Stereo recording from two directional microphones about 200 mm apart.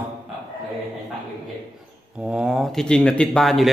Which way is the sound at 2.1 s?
5° right (ahead or behind).